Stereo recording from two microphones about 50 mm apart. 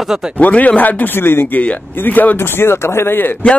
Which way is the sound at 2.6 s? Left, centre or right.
Left.